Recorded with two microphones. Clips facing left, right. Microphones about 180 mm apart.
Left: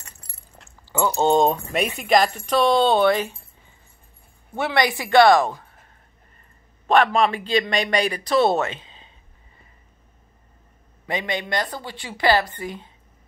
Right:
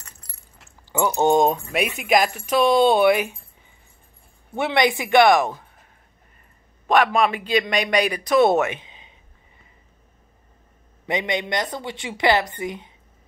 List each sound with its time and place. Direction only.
0.8 s speech: 15° right (ahead or behind)
4.6 s a woman's voice: 20° right (ahead or behind)
6.9 s speech: 15° right (ahead or behind)
11.1 s a woman's voice: 20° right (ahead or behind)